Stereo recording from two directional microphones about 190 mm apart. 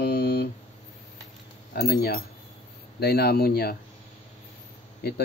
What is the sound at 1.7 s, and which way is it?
Speech, 55° left (ahead or behind).